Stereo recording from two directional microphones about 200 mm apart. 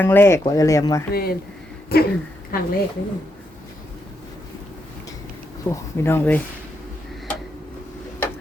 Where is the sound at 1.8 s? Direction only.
50° left (ahead or behind).